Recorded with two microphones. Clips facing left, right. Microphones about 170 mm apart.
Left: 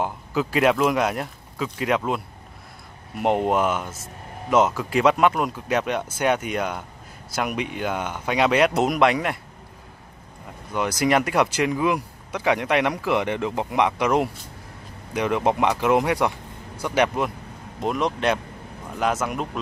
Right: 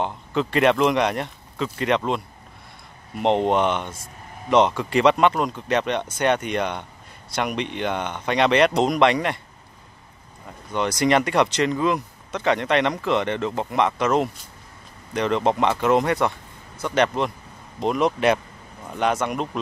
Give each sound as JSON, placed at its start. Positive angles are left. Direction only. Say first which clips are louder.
{"t": 0.0, "sound": "speech", "louder": "right 1 dB", "side_deg": 5}
{"t": 10.7, "sound": "speech", "louder": "right 1 dB", "side_deg": 5}